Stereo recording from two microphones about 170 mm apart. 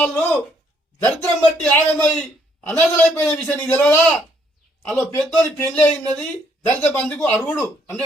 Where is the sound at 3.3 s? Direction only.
10° left (ahead or behind).